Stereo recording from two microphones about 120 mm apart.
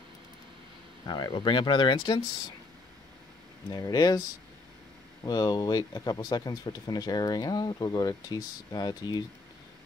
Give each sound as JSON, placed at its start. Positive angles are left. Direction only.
{"t": 1.0, "sound": "speech", "side_deg": 35}
{"t": 3.7, "sound": "speech", "side_deg": 35}
{"t": 5.2, "sound": "speech", "side_deg": 35}